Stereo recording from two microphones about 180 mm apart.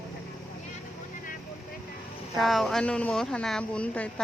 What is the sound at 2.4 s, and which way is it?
Speech, centre (ahead or behind).